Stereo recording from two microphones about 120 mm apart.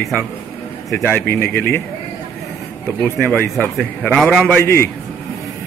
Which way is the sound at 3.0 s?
10° left (ahead or behind).